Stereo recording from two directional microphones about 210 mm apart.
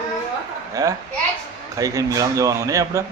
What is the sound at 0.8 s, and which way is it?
Speech, 15° right (ahead or behind).